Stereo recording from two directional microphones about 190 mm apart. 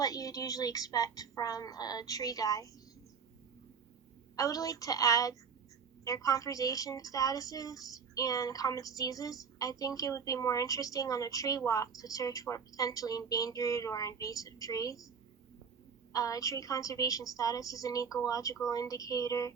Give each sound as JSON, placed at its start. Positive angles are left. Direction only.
{"t": 0.0, "sound": "a woman's voice", "side_deg": 20}
{"t": 4.4, "sound": "a woman's voice", "side_deg": 20}
{"t": 16.1, "sound": "a woman's voice", "side_deg": 20}